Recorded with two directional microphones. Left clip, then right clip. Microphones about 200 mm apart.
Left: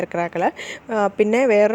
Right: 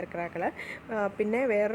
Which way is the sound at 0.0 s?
40° left (ahead or behind).